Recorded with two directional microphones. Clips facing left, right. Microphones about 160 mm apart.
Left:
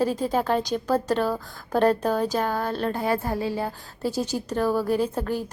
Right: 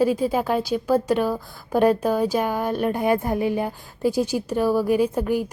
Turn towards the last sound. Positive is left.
turn(degrees=-10)  # may be behind; listen again after turning